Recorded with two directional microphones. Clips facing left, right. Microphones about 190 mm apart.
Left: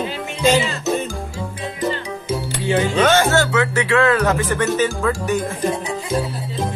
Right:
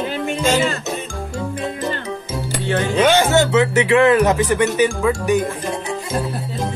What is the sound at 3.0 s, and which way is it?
Speech, 15° right (ahead or behind).